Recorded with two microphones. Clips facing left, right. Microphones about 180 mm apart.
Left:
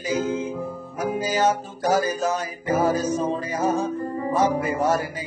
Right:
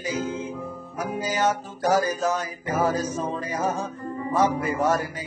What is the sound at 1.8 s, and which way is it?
Music, 30° left (ahead or behind).